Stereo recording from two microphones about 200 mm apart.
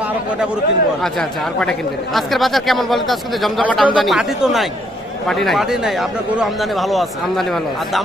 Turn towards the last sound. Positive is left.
turn(degrees=0)  # may be behind; listen again after turning